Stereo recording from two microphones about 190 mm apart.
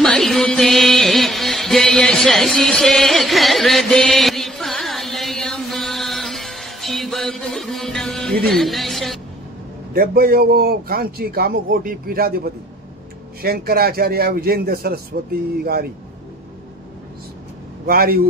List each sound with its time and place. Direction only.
0.0 s music: centre (ahead or behind)
8.5 s speech: centre (ahead or behind)
9.9 s a man's voice: 50° right (ahead or behind)
17.8 s a man's voice: 50° right (ahead or behind)